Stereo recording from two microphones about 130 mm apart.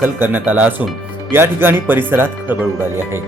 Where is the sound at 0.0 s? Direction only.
15° right (ahead or behind).